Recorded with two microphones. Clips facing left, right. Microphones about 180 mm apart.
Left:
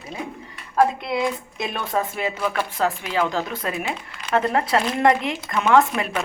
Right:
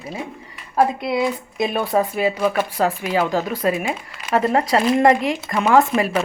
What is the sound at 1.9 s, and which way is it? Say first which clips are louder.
A woman's voice: right 5 dB; 15° right (ahead or behind).